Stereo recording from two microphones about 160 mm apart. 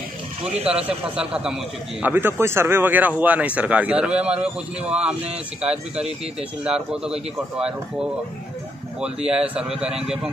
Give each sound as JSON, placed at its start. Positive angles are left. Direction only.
{"t": 0.4, "sound": "speech", "side_deg": -40}
{"t": 0.8, "sound": "a man's voice", "side_deg": -5}
{"t": 5.6, "sound": "a man's voice", "side_deg": -5}